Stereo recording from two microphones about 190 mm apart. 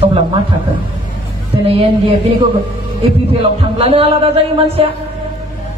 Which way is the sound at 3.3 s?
30° right (ahead or behind).